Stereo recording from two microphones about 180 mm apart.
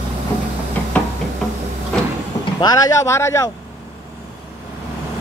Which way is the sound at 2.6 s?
20° left (ahead or behind).